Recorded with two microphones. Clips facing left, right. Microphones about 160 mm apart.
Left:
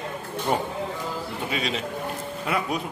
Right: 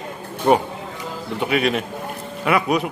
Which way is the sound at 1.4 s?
65° right (ahead or behind).